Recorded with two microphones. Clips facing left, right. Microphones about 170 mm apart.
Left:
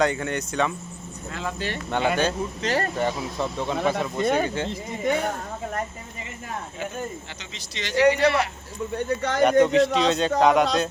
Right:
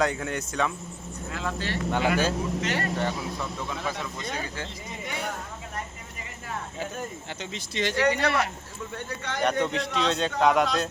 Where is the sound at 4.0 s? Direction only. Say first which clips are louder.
Left 11 dB; 55° left (ahead or behind).